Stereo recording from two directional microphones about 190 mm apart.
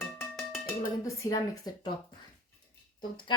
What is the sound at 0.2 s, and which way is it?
Music, centre (ahead or behind).